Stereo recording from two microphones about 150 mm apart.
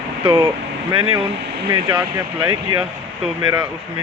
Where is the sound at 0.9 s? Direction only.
35° right (ahead or behind).